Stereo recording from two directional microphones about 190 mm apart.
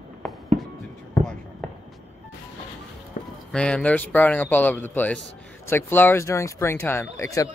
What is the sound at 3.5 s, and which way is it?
Speech, 5° left (ahead or behind).